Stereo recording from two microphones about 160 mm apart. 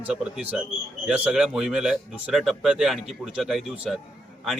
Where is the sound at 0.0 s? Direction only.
5° right (ahead or behind).